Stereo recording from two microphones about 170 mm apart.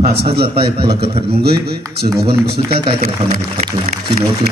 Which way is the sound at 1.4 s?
70° right (ahead or behind).